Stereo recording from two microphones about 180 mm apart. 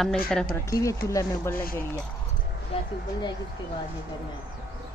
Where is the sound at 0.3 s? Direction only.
5° left (ahead or behind).